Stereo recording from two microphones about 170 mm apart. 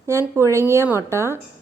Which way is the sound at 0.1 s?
15° right (ahead or behind).